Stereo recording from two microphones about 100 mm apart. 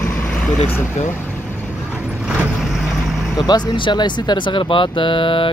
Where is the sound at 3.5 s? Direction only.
50° left (ahead or behind).